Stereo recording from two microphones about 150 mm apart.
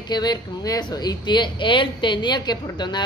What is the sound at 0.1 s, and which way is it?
A woman's voice, 30° left (ahead or behind).